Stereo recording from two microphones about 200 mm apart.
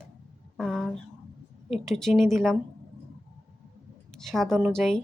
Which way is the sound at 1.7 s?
Centre (ahead or behind).